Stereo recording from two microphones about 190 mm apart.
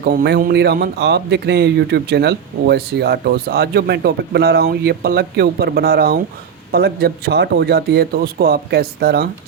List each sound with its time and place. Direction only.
0.0 s speech: 55° right (ahead or behind)